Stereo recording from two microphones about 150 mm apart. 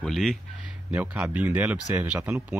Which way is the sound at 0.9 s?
10° right (ahead or behind).